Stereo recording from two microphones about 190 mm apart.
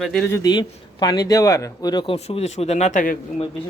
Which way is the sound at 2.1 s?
35° left (ahead or behind).